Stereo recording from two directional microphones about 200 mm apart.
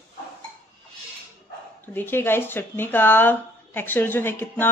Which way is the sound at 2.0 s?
10° left (ahead or behind).